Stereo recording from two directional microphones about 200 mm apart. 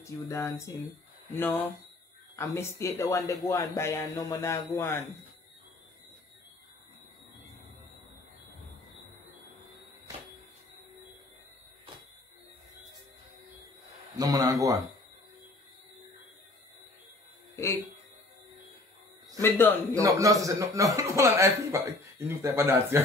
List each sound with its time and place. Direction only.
0.0 s speech: 15° left (ahead or behind)
14.1 s a man's voice: 20° right (ahead or behind)
19.4 s speech: 10° left (ahead or behind)
20.0 s a man's voice: 15° right (ahead or behind)